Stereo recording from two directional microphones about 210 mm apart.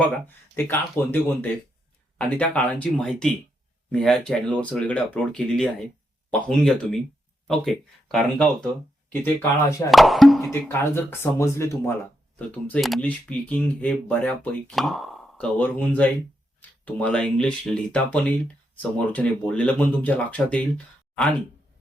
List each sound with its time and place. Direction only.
0.5 s speech: 10° left (ahead or behind)
9.9 s a sound: centre (ahead or behind)
10.5 s speech: 10° left (ahead or behind)